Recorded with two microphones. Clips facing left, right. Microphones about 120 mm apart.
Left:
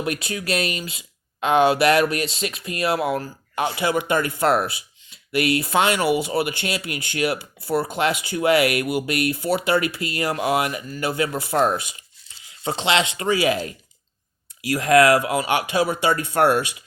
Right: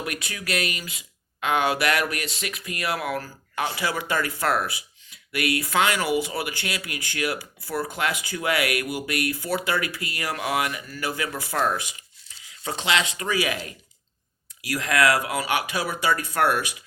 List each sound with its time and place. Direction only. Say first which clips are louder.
0.0 s speech: left 6 dB; 25° left (ahead or behind)